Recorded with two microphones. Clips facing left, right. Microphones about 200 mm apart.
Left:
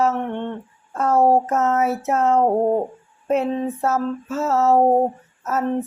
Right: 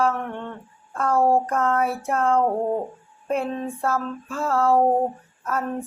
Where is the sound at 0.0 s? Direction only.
25° left (ahead or behind).